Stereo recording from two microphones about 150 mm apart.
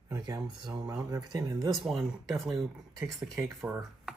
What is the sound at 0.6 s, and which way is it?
Speech, 30° right (ahead or behind).